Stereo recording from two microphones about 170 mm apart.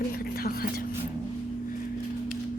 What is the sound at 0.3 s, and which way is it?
Music, 60° left (ahead or behind).